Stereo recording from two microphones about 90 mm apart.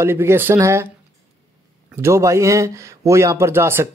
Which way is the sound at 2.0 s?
35° right (ahead or behind).